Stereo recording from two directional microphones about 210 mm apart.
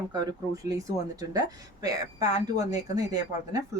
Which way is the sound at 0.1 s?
20° right (ahead or behind).